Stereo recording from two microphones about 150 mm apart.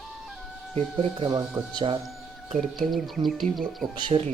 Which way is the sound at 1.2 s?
30° right (ahead or behind).